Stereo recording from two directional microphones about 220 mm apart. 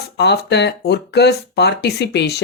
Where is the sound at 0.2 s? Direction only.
50° left (ahead or behind).